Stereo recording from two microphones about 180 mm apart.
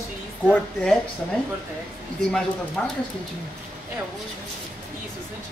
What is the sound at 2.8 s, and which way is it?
Speech, 5° left (ahead or behind).